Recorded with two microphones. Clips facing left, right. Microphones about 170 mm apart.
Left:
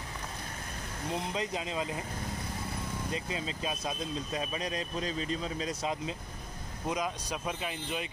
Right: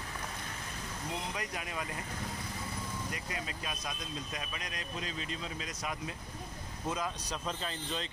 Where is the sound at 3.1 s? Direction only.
25° left (ahead or behind).